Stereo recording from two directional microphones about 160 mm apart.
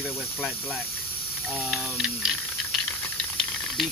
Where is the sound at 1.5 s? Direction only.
5° left (ahead or behind).